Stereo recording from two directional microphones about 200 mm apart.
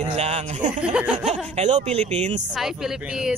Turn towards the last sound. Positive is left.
turn(degrees=0)  # may be behind; listen again after turning